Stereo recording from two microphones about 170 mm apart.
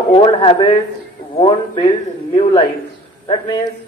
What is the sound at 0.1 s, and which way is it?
A woman's voice, 30° left (ahead or behind).